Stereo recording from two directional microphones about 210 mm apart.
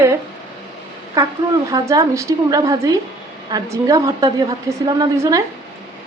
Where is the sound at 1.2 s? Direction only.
15° right (ahead or behind).